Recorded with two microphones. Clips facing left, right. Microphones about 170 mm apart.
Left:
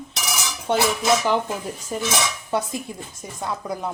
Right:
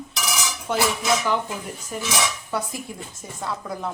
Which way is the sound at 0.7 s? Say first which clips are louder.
Left 3 dB; 25° left (ahead or behind).